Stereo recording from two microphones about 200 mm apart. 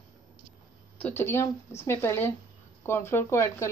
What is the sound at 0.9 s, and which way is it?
A woman's voice, 10° left (ahead or behind).